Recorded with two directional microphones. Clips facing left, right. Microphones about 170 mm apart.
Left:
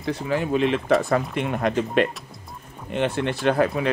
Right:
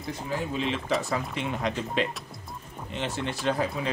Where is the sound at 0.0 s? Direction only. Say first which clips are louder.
Left 7 dB; 75° left (ahead or behind).